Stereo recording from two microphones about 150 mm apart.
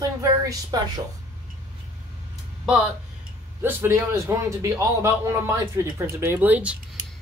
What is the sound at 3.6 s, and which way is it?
A man's voice, 15° right (ahead or behind).